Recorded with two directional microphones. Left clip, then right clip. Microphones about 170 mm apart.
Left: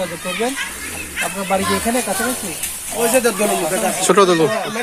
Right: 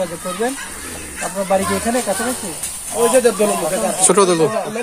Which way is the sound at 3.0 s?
40° right (ahead or behind).